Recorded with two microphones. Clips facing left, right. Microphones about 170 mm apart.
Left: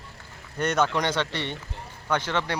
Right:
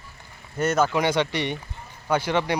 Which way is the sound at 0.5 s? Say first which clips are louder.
Right 2 dB; 5° right (ahead or behind).